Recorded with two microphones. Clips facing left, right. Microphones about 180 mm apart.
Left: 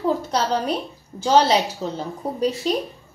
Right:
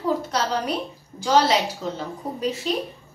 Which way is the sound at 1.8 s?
30° left (ahead or behind).